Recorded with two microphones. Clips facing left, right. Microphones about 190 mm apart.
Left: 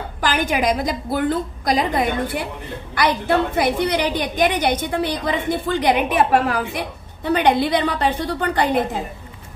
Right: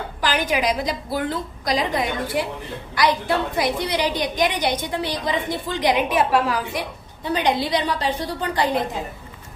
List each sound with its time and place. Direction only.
0.2 s a woman's voice: 50° left (ahead or behind)